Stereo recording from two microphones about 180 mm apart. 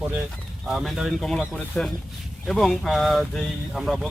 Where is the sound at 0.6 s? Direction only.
Centre (ahead or behind).